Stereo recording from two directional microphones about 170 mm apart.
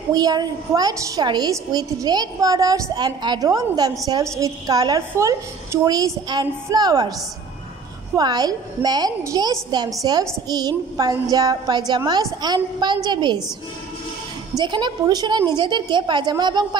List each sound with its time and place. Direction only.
0.1 s a woman's voice: 25° right (ahead or behind)
8.2 s a woman's voice: 25° right (ahead or behind)
11.0 s a woman's voice: 20° right (ahead or behind)
14.6 s a woman's voice: 25° right (ahead or behind)